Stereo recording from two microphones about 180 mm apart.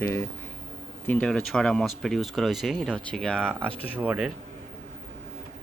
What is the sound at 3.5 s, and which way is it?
Speech, 10° right (ahead or behind).